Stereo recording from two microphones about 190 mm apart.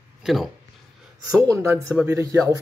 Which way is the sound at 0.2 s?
Centre (ahead or behind).